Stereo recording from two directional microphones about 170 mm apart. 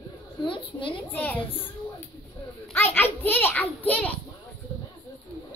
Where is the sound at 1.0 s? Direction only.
10° left (ahead or behind).